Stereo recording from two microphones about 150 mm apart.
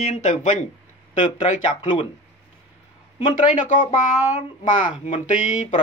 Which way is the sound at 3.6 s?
60° left (ahead or behind).